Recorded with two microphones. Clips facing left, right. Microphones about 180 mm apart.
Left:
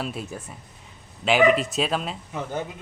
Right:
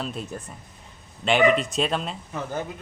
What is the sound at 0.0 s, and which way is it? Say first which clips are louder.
Speech: even; 5° left (ahead or behind).